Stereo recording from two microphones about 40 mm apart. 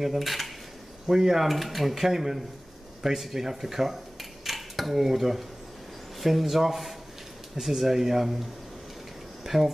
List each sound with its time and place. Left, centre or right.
0.0 s speech: centre
9.4 s speech: centre